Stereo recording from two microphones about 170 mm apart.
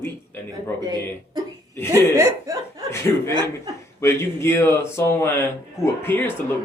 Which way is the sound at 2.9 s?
15° left (ahead or behind).